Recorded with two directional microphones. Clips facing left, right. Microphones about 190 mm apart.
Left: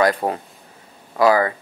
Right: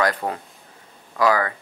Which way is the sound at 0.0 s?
30° left (ahead or behind).